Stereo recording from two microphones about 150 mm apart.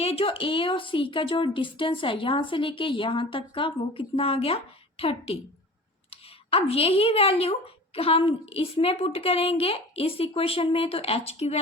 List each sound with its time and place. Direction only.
0.0 s a woman's voice: 40° left (ahead or behind)